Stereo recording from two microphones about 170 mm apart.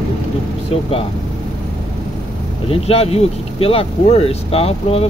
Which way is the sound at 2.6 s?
35° left (ahead or behind).